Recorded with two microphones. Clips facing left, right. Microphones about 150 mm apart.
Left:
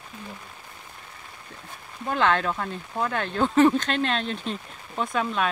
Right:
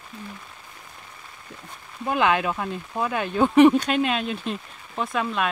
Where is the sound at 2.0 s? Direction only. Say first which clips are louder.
Right 1 dB; 10° right (ahead or behind).